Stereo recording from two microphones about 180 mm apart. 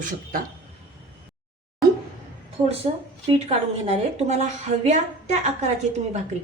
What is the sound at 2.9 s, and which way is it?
A woman's voice, 25° right (ahead or behind).